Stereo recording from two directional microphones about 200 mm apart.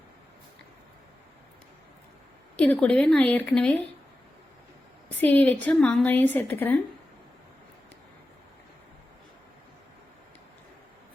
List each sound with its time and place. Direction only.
2.6 s speech: 5° left (ahead or behind)
5.0 s a woman's voice: 10° left (ahead or behind)